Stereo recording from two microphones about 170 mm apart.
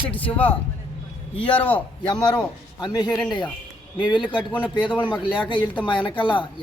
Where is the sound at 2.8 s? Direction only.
25° left (ahead or behind).